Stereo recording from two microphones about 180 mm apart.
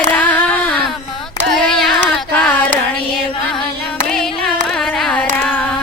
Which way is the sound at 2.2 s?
5° left (ahead or behind).